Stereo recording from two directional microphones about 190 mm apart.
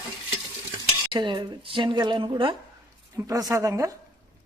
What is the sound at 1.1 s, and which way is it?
Speech, 25° right (ahead or behind).